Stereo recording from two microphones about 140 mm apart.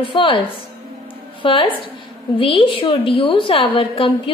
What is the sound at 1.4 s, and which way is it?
A woman's voice, 35° left (ahead or behind).